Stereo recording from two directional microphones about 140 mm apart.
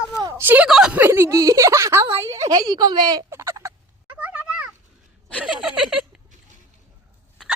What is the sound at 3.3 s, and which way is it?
Fowl, 20° right (ahead or behind).